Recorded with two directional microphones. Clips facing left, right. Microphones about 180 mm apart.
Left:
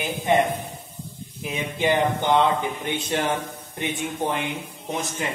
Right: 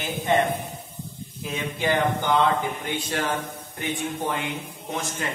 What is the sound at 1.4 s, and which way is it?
A man's voice, 20° left (ahead or behind).